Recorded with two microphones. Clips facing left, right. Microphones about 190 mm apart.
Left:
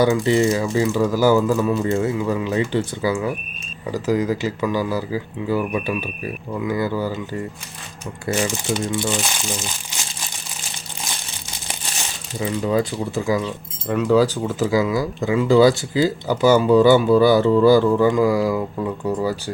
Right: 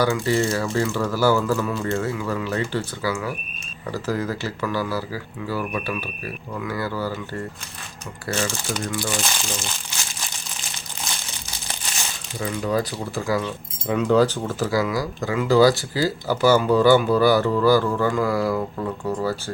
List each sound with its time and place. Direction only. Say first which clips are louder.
0.0 s speech: left 4 dB; 20° left (ahead or behind)
12.4 s speech: left 3 dB; 25° left (ahead or behind)
13.8 s speech: left 1 dB; 5° left (ahead or behind)
14.4 s speech: left 3 dB; 20° left (ahead or behind)